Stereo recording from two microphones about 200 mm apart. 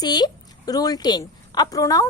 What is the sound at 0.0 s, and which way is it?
A woman's voice, 20° left (ahead or behind).